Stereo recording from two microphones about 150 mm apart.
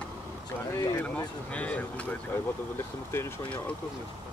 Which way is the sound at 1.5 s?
10° left (ahead or behind).